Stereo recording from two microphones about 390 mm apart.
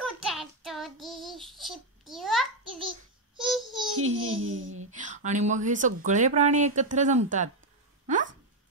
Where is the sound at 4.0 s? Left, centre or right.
Right.